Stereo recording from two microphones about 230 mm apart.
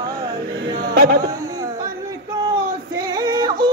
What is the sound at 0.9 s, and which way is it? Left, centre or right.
Music, right.